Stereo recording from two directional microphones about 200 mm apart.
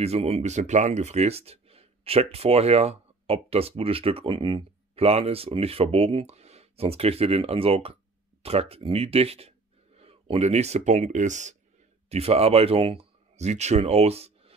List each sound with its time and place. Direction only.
0.0 s speech: 30° right (ahead or behind)